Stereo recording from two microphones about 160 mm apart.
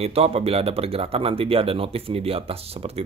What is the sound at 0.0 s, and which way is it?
Speech, 40° right (ahead or behind).